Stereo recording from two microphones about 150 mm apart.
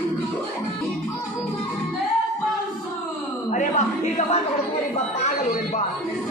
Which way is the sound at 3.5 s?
55° left (ahead or behind).